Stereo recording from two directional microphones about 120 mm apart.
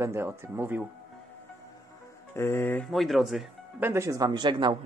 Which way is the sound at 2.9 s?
Centre (ahead or behind).